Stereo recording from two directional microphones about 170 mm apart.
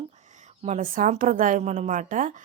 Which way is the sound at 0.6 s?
45° right (ahead or behind).